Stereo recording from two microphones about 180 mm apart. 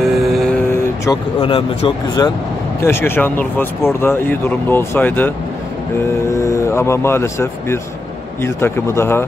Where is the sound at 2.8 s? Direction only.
15° left (ahead or behind).